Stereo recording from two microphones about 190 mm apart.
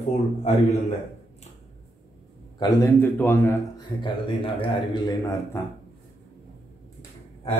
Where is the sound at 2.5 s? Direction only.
15° left (ahead or behind).